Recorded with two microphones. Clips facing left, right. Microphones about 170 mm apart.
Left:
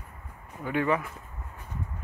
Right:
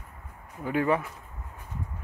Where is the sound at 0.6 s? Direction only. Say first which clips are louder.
Right 1 dB; 30° right (ahead or behind).